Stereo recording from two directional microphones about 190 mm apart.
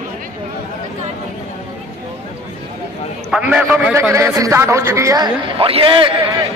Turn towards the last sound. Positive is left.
turn(degrees=-25)  # may be behind; listen again after turning